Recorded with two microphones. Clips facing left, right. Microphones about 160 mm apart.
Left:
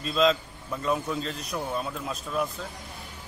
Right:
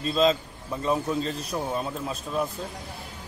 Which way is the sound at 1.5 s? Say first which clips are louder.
Right 2 dB; 30° right (ahead or behind).